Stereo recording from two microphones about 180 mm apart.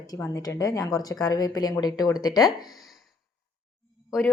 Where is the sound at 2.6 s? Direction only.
Centre (ahead or behind).